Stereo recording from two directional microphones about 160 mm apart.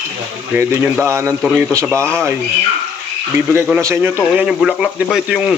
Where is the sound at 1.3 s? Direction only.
5° right (ahead or behind).